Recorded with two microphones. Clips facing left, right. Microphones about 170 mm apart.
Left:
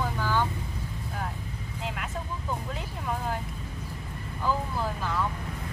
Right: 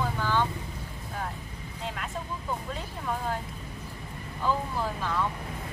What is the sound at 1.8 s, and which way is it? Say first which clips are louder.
Vehicle: even; 5° left (ahead or behind).